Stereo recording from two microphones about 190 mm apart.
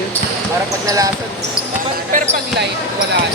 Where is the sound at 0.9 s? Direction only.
20° right (ahead or behind).